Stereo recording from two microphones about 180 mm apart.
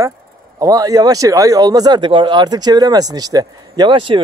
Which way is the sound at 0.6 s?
20° right (ahead or behind).